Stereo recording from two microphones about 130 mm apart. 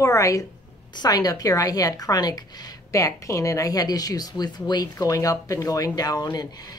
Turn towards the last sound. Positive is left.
turn(degrees=30)  # may be behind; listen again after turning